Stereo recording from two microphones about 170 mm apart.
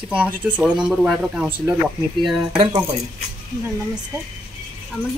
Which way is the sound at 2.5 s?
30° right (ahead or behind).